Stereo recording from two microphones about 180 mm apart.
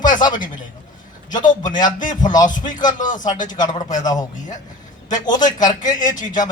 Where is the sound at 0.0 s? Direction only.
25° left (ahead or behind).